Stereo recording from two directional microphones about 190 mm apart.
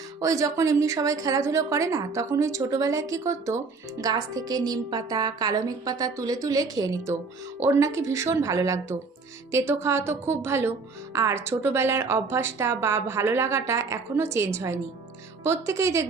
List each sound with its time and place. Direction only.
0.2 s a woman's voice: 15° right (ahead or behind)